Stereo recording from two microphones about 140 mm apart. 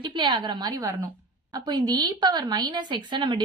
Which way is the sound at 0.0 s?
35° right (ahead or behind).